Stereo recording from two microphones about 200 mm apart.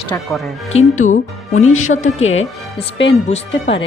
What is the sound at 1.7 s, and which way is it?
Speech, 90° left.